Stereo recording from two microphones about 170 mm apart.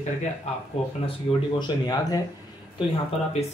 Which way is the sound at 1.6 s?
20° left (ahead or behind).